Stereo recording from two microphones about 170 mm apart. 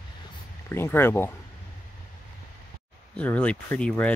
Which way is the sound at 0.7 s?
15° left (ahead or behind).